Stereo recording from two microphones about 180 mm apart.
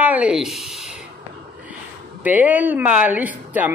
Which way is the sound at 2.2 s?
10° right (ahead or behind).